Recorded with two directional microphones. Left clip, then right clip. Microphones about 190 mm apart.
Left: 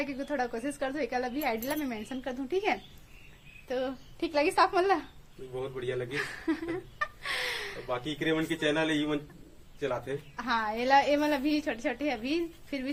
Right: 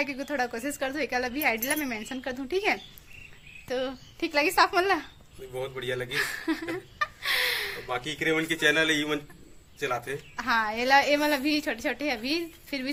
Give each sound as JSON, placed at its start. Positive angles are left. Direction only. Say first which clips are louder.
{"t": 0.0, "sound": "speech", "louder": "right 3 dB", "side_deg": -15}
{"t": 5.7, "sound": "a man's voice", "louder": "right 2 dB", "side_deg": 10}
{"t": 6.1, "sound": "a sound", "louder": "right 4 dB", "side_deg": -20}
{"t": 7.9, "sound": "a man's voice", "louder": "right 3 dB", "side_deg": 10}
{"t": 10.3, "sound": "speech", "louder": "right 4 dB", "side_deg": -15}